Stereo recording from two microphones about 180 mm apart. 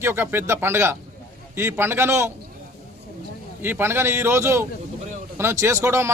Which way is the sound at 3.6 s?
15° right (ahead or behind).